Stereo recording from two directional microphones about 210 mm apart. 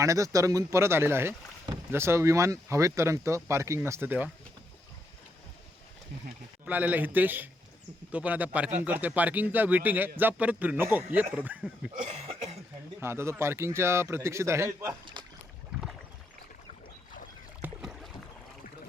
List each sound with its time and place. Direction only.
0.0 s speech: 15° right (ahead or behind)
6.7 s speech: 10° right (ahead or behind)
12.0 s cough: 30° right (ahead or behind)
13.0 s speech: 10° right (ahead or behind)
17.6 s boat: 5° right (ahead or behind)